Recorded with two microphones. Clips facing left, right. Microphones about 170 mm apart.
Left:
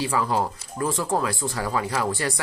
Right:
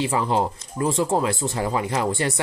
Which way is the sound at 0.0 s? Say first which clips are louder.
Right 2 dB; 25° right (ahead or behind).